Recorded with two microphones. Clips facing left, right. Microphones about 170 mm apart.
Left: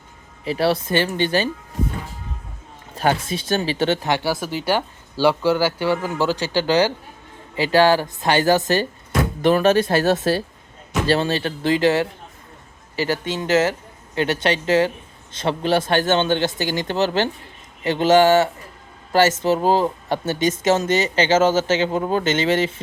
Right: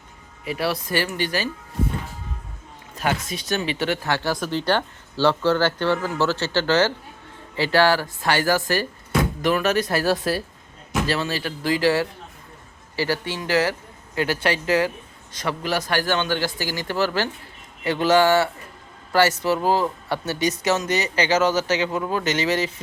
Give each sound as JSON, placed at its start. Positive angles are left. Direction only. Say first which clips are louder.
{"t": 0.4, "sound": "speech", "louder": "left 5 dB", "side_deg": 30}
{"t": 2.9, "sound": "speech", "louder": "left 5 dB", "side_deg": 30}
{"t": 4.3, "sound": "speech", "louder": "left 1 dB", "side_deg": 5}